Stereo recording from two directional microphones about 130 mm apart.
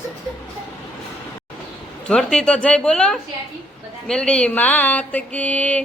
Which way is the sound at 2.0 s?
5° left (ahead or behind).